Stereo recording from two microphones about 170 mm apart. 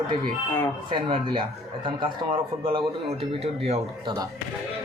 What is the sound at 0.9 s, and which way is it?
Speech, 30° right (ahead or behind).